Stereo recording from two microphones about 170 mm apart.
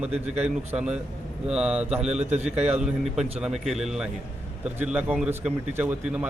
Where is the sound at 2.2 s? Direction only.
40° right (ahead or behind).